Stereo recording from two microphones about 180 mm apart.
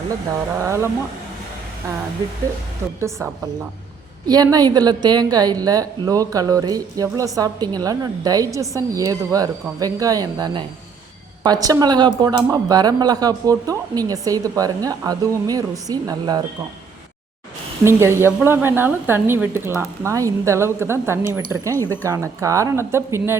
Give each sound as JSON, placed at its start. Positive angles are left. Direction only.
{"t": 0.6, "sound": "speech", "side_deg": -15}
{"t": 4.3, "sound": "speech", "side_deg": -20}
{"t": 17.8, "sound": "speech", "side_deg": -15}